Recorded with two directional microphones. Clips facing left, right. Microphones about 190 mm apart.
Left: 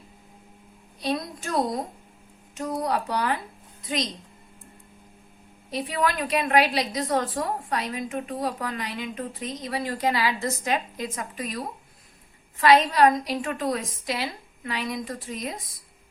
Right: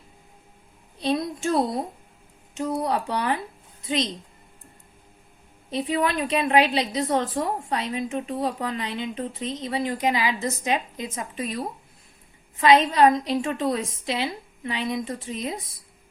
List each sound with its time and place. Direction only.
0.9 s a woman's voice: 25° right (ahead or behind)
5.7 s a woman's voice: 25° right (ahead or behind)